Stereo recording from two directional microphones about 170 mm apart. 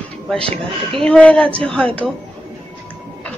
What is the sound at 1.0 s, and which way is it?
A woman's voice, 5° left (ahead or behind).